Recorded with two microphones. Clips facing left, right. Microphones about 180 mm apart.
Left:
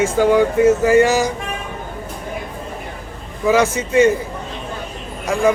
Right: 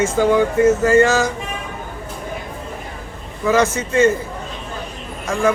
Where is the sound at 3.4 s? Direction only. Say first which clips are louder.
Left 1 dB; 15° left (ahead or behind).